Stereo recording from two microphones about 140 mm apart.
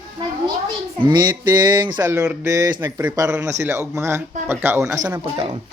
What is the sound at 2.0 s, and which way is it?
Speech, 20° right (ahead or behind).